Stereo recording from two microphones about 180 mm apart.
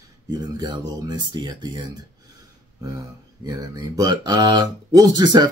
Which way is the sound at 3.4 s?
20° right (ahead or behind).